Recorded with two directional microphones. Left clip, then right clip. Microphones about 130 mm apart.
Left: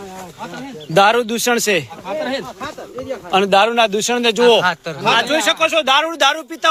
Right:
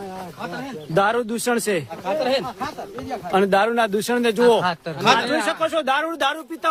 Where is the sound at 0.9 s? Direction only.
40° left (ahead or behind).